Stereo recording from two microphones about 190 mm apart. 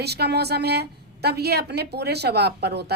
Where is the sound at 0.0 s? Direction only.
60° right (ahead or behind).